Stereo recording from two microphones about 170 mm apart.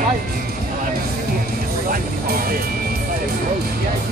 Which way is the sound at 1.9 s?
60° right (ahead or behind).